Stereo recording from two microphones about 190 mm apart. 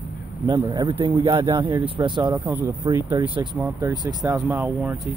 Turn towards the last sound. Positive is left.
turn(degrees=-10)  # may be behind; listen again after turning